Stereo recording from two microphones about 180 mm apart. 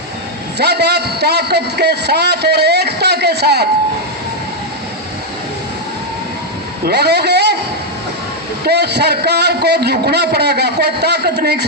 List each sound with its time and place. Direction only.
0.6 s a man's voice: 65° right (ahead or behind)
6.8 s a man's voice: 65° right (ahead or behind)
8.6 s a man's voice: 65° right (ahead or behind)